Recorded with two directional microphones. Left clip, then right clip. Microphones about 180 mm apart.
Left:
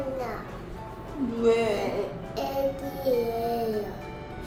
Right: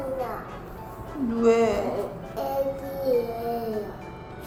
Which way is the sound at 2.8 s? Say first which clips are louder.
Right 1 dB; centre (ahead or behind).